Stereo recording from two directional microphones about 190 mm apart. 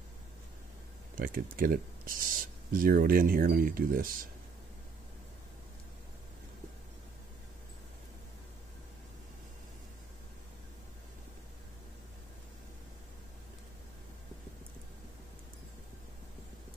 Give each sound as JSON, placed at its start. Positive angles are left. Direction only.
{"t": 1.1, "sound": "speech", "side_deg": -45}